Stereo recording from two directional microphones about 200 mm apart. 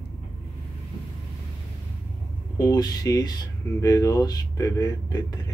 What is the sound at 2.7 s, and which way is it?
Speech, 20° left (ahead or behind).